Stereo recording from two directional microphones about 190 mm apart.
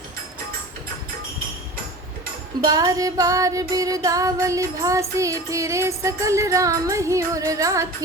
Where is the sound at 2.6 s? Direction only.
20° right (ahead or behind).